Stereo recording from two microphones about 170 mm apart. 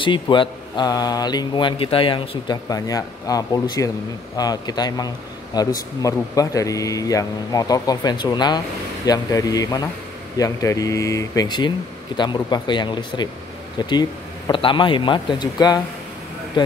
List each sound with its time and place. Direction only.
0.0 s a man's voice: 30° left (ahead or behind)